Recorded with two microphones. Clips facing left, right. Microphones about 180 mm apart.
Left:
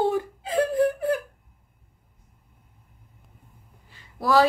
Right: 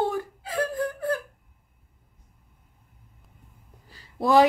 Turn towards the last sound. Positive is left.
turn(degrees=-20)  # may be behind; listen again after turning